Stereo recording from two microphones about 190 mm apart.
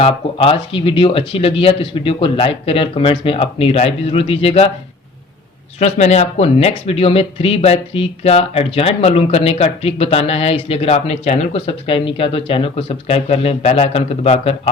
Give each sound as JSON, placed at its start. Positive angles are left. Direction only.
{"t": 0.0, "sound": "speech", "side_deg": 30}
{"t": 5.8, "sound": "speech", "side_deg": 35}